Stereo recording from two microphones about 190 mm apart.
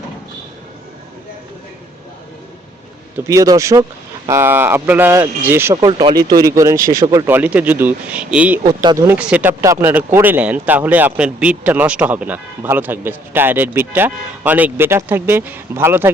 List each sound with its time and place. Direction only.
3.2 s speech: 15° right (ahead or behind)
5.7 s speech: 25° right (ahead or behind); by 8.6 s 5° right (ahead or behind)
8.8 s speech: 20° right (ahead or behind)